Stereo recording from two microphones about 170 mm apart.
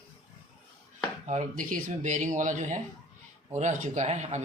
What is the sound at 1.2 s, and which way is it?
A man's voice, 45° right (ahead or behind).